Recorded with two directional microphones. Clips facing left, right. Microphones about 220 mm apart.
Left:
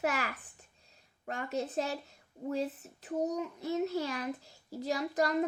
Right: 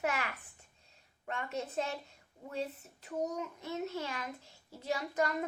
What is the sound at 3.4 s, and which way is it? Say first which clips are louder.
A child's voice: left 6 dB; 35° left (ahead or behind).